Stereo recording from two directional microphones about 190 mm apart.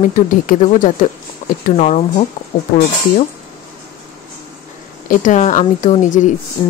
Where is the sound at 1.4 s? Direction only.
40° left (ahead or behind).